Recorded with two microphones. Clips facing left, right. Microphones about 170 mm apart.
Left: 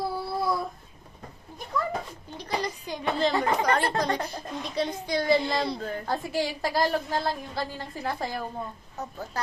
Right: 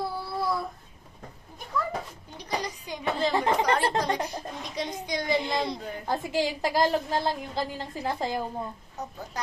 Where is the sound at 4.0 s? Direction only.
10° right (ahead or behind).